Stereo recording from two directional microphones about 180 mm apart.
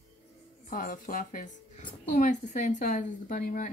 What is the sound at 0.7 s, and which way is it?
Speech, 50° left (ahead or behind).